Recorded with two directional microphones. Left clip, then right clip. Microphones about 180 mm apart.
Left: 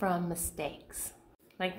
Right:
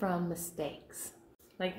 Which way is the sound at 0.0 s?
5° left (ahead or behind).